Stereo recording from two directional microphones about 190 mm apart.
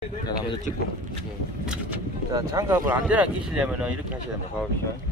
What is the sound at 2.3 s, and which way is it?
Speech, 20° right (ahead or behind).